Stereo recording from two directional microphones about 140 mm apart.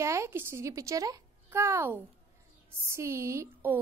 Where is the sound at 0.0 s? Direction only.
20° right (ahead or behind).